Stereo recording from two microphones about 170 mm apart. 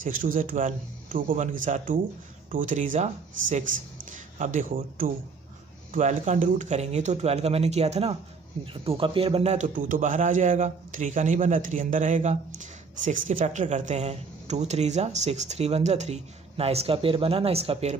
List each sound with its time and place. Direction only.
0.0 s a man's voice: 50° right (ahead or behind); by 17.9 s 35° right (ahead or behind)